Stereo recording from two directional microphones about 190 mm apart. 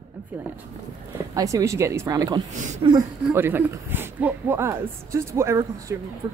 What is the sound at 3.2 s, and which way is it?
Speech, 10° right (ahead or behind).